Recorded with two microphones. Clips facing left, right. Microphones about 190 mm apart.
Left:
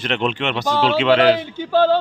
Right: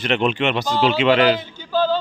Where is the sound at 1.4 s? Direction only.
70° left (ahead or behind).